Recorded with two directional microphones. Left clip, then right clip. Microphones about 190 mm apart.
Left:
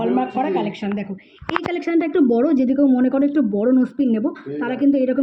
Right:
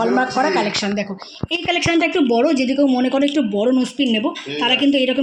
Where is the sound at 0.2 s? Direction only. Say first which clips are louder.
Right 4 dB; 35° right (ahead or behind).